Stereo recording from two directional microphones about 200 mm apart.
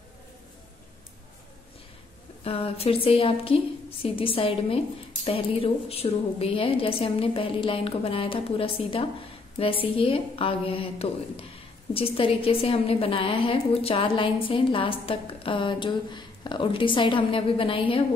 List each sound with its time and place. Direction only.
2.4 s a woman's voice: 30° left (ahead or behind)